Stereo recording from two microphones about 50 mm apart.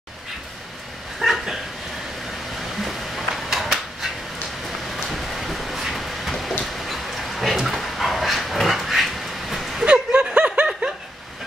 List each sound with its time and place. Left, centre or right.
1.2 s dog: centre
2.8 s a sound: centre
6.6 s dog: centre
9.8 s snicker: right